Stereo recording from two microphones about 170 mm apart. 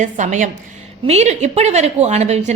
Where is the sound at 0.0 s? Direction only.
45° right (ahead or behind).